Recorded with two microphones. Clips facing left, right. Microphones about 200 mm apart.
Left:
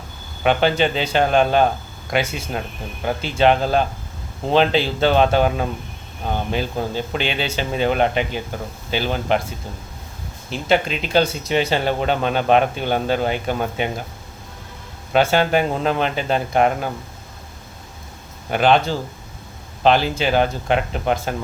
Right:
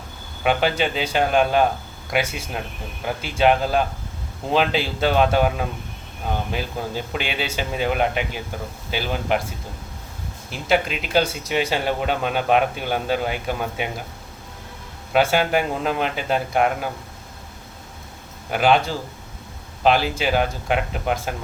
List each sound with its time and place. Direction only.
0.4 s speech: 5° right (ahead or behind)
10.5 s speech: 5° right (ahead or behind)
15.1 s speech: 10° right (ahead or behind)
18.5 s speech: 5° right (ahead or behind)